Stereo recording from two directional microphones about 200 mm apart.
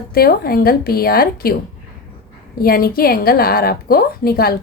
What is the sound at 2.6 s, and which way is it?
Speech, 50° left (ahead or behind).